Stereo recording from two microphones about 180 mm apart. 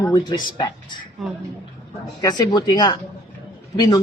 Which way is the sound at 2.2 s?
20° left (ahead or behind).